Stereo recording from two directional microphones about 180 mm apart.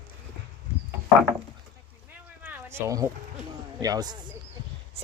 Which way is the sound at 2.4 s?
15° right (ahead or behind).